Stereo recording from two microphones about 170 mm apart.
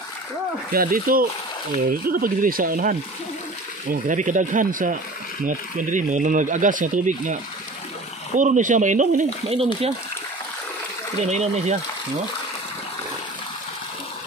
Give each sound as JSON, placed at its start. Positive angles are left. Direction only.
{"t": 0.7, "sound": "speech", "side_deg": -60}
{"t": 8.4, "sound": "speech", "side_deg": -50}
{"t": 11.2, "sound": "speech", "side_deg": -40}